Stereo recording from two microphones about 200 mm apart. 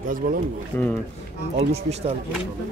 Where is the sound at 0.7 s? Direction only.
5° left (ahead or behind).